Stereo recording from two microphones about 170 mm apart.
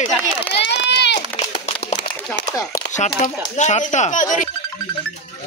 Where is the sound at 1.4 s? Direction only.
40° left (ahead or behind).